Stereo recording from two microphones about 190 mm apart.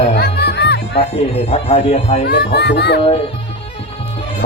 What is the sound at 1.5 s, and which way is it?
Speech, 35° left (ahead or behind).